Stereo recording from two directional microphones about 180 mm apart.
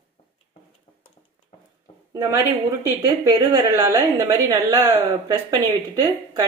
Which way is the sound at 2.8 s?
20° right (ahead or behind).